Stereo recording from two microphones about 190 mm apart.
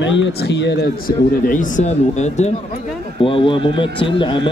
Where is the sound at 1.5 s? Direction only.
45° left (ahead or behind).